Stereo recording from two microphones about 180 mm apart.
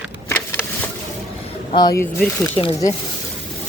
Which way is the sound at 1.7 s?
20° left (ahead or behind).